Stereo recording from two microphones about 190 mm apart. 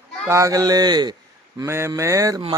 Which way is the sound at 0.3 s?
15° right (ahead or behind).